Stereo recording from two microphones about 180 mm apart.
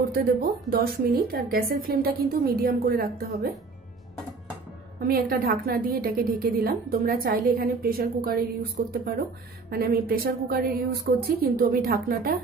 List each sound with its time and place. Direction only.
0.1 s a woman's voice: 55° right (ahead or behind)
5.0 s a woman's voice: 55° right (ahead or behind)